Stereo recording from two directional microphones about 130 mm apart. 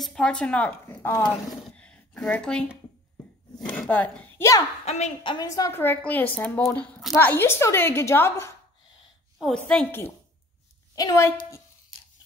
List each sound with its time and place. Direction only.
0.0 s a woman's voice: 5° left (ahead or behind)
1.8 s a sound: 5° left (ahead or behind)
4.8 s a woman's voice: 60° left (ahead or behind)
5.2 s a woman's voice: 40° left (ahead or behind)
5.5 s a woman's voice: 20° left (ahead or behind)
9.4 s a woman's voice: 5° left (ahead or behind)
11.0 s a woman's voice: 30° left (ahead or behind)